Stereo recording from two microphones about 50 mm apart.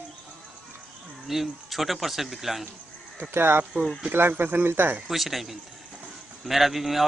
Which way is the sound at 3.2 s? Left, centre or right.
Right.